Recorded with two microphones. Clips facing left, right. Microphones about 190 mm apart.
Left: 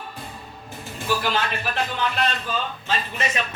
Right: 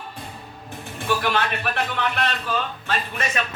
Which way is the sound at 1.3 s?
60° right (ahead or behind).